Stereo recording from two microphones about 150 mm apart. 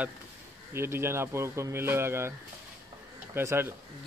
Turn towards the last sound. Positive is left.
turn(degrees=-15)  # may be behind; listen again after turning